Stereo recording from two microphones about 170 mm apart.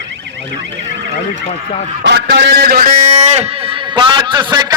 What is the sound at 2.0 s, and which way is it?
Speech, 85° right.